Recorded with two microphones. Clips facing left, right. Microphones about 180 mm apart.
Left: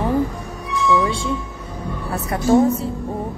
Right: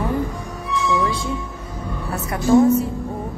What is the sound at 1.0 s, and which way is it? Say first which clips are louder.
A woman's voice: left 1 dB; 30° left (ahead or behind).